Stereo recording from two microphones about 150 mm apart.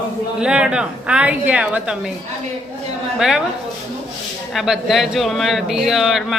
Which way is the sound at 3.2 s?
5° right (ahead or behind).